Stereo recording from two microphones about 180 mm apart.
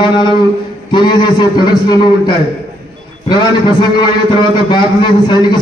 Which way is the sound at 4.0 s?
25° left (ahead or behind).